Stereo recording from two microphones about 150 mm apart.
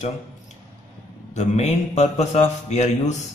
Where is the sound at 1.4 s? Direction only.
50° left (ahead or behind).